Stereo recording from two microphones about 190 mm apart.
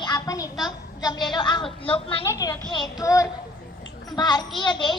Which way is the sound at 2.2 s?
15° left (ahead or behind).